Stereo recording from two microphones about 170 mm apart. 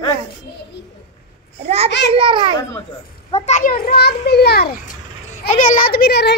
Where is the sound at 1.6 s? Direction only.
35° right (ahead or behind).